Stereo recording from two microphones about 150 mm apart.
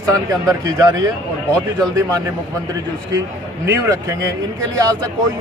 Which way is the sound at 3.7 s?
20° right (ahead or behind).